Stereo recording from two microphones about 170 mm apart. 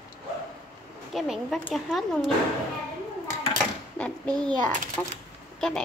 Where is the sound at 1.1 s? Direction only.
Centre (ahead or behind).